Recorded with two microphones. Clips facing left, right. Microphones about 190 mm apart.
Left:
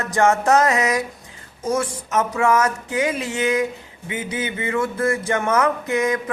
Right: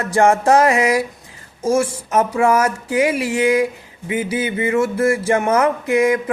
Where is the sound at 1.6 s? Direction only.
30° right (ahead or behind).